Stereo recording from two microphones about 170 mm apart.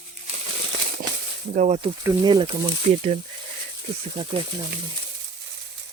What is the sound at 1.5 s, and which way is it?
Speech, 40° right (ahead or behind).